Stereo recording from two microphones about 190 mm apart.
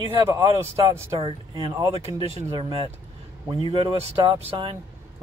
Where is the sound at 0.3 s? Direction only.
15° right (ahead or behind).